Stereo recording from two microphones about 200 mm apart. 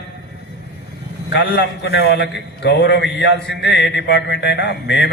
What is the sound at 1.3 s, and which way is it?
A man's voice, 55° left (ahead or behind).